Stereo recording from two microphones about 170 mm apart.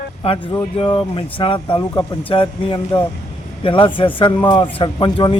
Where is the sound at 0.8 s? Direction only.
30° left (ahead or behind).